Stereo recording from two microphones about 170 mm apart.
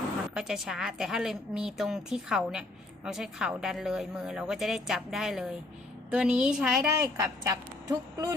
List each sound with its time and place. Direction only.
0.3 s a woman's voice: 5° right (ahead or behind)
7.2 s speech: 20° right (ahead or behind)